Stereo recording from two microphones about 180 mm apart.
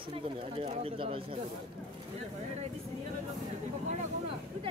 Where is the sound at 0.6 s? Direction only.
30° right (ahead or behind).